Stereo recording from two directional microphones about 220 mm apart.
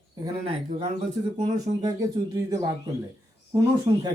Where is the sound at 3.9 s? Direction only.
25° right (ahead or behind).